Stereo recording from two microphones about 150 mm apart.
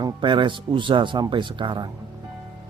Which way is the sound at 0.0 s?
30° right (ahead or behind).